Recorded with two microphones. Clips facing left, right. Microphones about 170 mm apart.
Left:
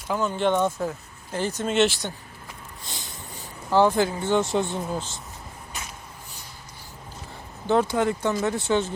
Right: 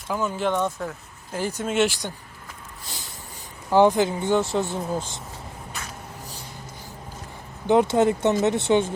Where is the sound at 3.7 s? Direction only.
15° right (ahead or behind).